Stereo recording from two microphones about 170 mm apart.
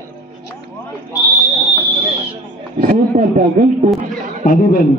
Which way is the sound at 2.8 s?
50° right (ahead or behind).